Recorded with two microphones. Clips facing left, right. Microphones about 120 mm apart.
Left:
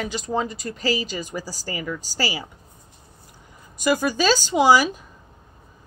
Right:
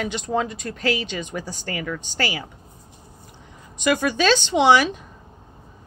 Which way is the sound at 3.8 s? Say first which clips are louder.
Even; 5° left (ahead or behind).